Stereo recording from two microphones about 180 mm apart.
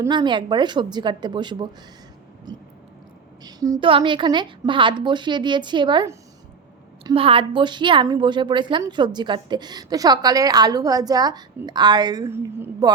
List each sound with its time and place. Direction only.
0.0 s a woman's voice: 25° right (ahead or behind)